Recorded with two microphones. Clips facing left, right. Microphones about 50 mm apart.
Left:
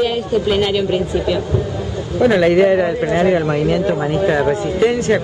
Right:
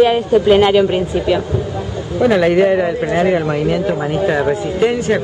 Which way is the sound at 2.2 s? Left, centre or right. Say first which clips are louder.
Even; centre.